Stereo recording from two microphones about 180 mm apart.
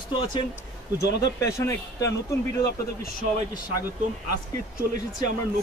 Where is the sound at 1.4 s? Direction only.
15° left (ahead or behind).